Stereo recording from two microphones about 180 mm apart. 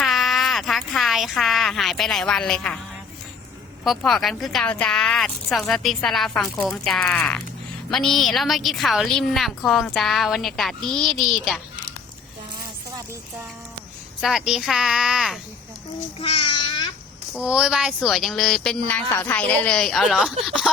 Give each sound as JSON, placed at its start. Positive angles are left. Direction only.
{"t": 0.0, "sound": "a sound", "side_deg": 0}
{"t": 3.8, "sound": "a woman's voice", "side_deg": 0}
{"t": 14.2, "sound": "a woman's voice", "side_deg": 0}
{"t": 16.1, "sound": "babbling", "side_deg": 30}
{"t": 17.3, "sound": "a woman's voice", "side_deg": -5}